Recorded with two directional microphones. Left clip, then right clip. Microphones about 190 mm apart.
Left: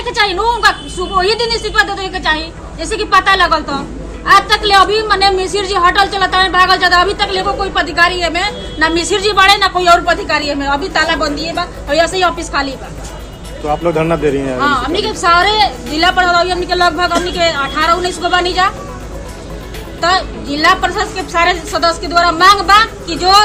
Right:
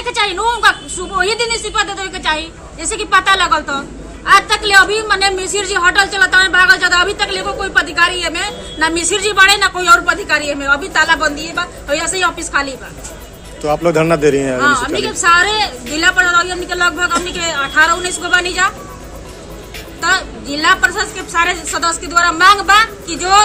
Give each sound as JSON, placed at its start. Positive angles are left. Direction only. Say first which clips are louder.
{"t": 0.0, "sound": "a woman's voice", "louder": "left 2 dB", "side_deg": -10}
{"t": 13.7, "sound": "speech", "louder": "right 1 dB", "side_deg": -55}
{"t": 14.6, "sound": "a woman's voice", "louder": "left 2 dB", "side_deg": -10}
{"t": 20.0, "sound": "a woman's voice", "louder": "left 2 dB", "side_deg": -10}